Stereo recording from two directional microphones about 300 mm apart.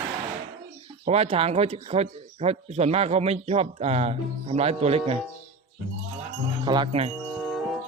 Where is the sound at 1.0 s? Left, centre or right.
Right.